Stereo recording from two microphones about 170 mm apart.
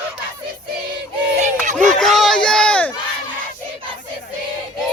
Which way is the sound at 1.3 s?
45° right (ahead or behind).